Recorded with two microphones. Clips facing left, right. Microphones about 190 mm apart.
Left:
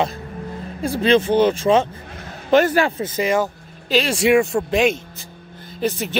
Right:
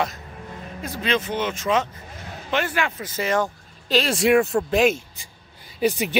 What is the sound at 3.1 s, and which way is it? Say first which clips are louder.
Speech: left 2 dB; 10° left (ahead or behind).